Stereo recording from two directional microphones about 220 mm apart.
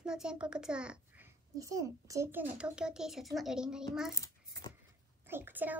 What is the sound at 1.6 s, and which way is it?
A child's voice, 15° right (ahead or behind).